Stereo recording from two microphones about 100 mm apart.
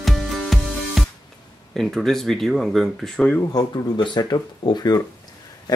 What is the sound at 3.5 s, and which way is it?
Speech, 45° left (ahead or behind).